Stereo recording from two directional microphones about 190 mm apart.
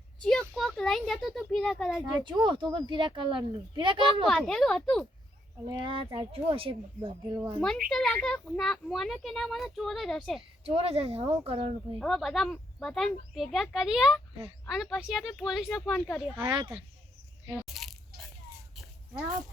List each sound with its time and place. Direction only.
0.3 s a child's voice: centre (ahead or behind)
2.0 s speech: 25° right (ahead or behind)
4.3 s a child's voice: 5° left (ahead or behind)
5.6 s speech: 25° right (ahead or behind)
7.3 s a woman's voice: 15° right (ahead or behind)
7.9 s a child's voice: 5° left (ahead or behind)
10.6 s speech: 30° right (ahead or behind)
11.9 s a child's voice: centre (ahead or behind)
16.4 s speech: 25° right (ahead or behind)
17.5 s crunch: centre (ahead or behind)